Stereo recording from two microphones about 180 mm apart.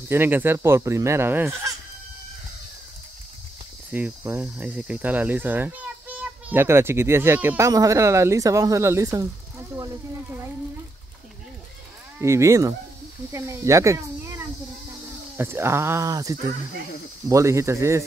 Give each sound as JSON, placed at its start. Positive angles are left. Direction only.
{"t": 0.1, "sound": "speech", "side_deg": -10}
{"t": 3.9, "sound": "speech", "side_deg": -10}
{"t": 12.2, "sound": "speech", "side_deg": -15}